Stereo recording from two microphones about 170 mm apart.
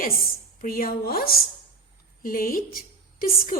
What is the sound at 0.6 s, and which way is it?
A woman's voice, 55° left (ahead or behind).